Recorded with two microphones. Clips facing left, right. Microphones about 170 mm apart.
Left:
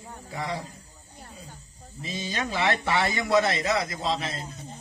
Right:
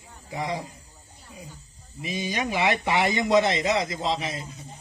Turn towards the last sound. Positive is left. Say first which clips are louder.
# right 1 dB
turn(degrees=-15)  # may be behind; listen again after turning